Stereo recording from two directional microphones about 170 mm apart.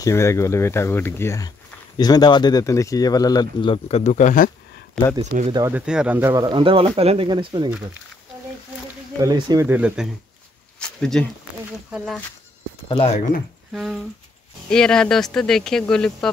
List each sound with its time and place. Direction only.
0.0 s speech: 15° left (ahead or behind); by 4.5 s 45° left (ahead or behind)
5.2 s speech: 40° right (ahead or behind)
5.5 s speech: 20° right (ahead or behind)
5.8 s speech: 5° right (ahead or behind)
6.3 s speech: 25° right (ahead or behind)
9.2 s speech: 20° right (ahead or behind)
9.7 s speech: 10° right (ahead or behind)
10.8 s speech: 5° left (ahead or behind)
12.8 s speech: 30° left (ahead or behind)
13.7 s speech: centre (ahead or behind)